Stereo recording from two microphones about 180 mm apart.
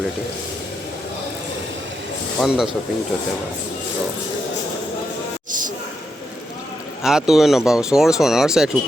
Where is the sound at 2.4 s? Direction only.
Centre (ahead or behind).